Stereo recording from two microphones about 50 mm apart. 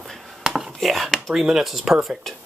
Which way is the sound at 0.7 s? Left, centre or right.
Centre.